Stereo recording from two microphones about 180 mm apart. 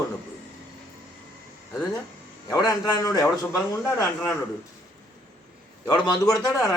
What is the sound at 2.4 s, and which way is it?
Speech, 20° left (ahead or behind).